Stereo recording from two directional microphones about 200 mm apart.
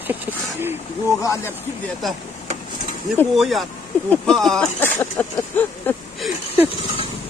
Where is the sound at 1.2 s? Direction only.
15° left (ahead or behind).